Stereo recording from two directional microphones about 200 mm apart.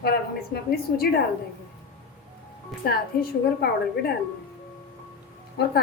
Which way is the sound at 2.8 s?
50° left (ahead or behind).